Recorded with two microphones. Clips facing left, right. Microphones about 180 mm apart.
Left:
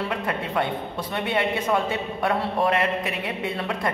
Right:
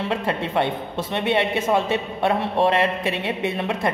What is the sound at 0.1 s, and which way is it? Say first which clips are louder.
A woman's voice: right 3 dB; 25° right (ahead or behind).